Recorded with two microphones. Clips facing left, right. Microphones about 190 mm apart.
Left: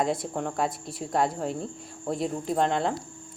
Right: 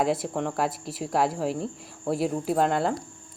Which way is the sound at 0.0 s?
5° right (ahead or behind).